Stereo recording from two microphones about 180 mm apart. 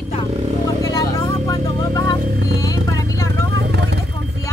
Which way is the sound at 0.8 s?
20° left (ahead or behind).